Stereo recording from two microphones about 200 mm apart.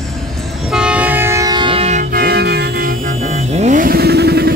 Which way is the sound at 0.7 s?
5° right (ahead or behind).